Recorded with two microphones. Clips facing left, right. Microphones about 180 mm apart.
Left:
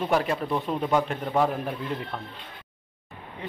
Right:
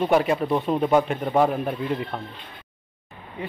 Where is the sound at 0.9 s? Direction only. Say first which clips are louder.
Right 3 dB; 5° right (ahead or behind).